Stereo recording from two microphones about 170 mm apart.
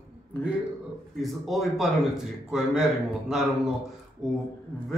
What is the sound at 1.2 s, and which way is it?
A man's voice, centre (ahead or behind).